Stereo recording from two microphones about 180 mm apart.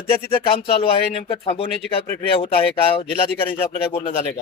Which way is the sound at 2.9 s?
30° left (ahead or behind).